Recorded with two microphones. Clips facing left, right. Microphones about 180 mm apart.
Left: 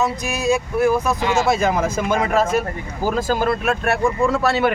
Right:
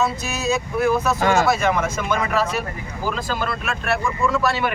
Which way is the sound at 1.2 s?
50° right (ahead or behind).